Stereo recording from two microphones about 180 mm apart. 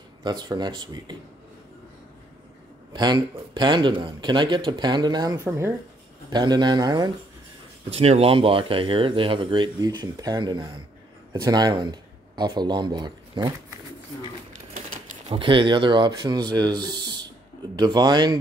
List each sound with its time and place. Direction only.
0.2 s speech: 25° right (ahead or behind)
2.9 s speech: 25° right (ahead or behind)
7.9 s speech: 35° right (ahead or behind)
14.7 s typewriter: 50° right (ahead or behind)
15.3 s speech: 30° right (ahead or behind)